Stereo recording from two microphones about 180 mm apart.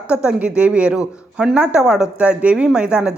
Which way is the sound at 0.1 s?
5° right (ahead or behind).